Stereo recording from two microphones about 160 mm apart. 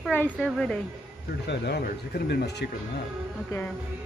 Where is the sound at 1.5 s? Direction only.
90° left.